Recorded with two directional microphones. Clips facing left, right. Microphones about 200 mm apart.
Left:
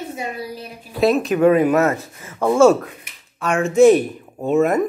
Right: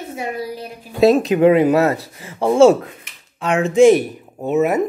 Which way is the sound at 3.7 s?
10° right (ahead or behind).